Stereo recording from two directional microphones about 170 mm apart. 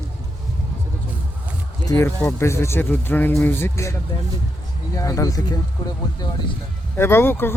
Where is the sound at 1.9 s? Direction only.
15° left (ahead or behind).